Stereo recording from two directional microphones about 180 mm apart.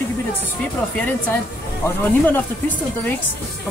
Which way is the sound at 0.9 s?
10° left (ahead or behind).